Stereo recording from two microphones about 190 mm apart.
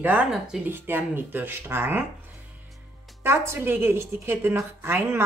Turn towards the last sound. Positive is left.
turn(degrees=-15)  # may be behind; listen again after turning